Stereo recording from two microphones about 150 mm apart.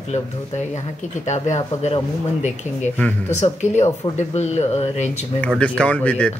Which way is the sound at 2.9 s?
10° left (ahead or behind).